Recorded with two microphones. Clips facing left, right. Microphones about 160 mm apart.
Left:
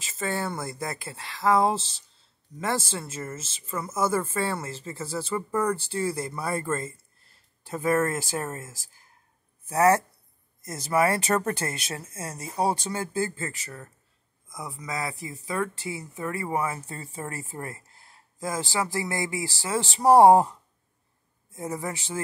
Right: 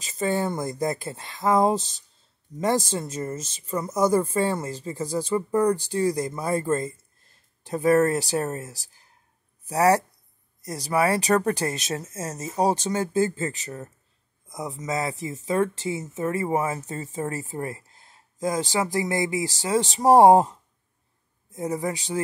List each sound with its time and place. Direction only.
0.0 s speech: 15° right (ahead or behind)
0.7 s speech: 45° right (ahead or behind)
1.1 s speech: 20° right (ahead or behind)
1.6 s speech: 40° right (ahead or behind)
3.3 s speech: 40° right (ahead or behind)
3.8 s speech: 15° right (ahead or behind)
7.9 s speech: 35° right (ahead or behind)
9.7 s speech: 15° right (ahead or behind)